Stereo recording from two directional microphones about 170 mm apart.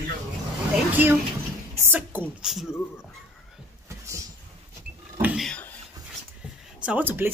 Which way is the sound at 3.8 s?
20° right (ahead or behind).